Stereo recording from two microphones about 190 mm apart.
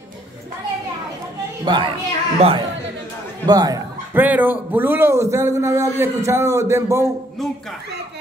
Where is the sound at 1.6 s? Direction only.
25° right (ahead or behind).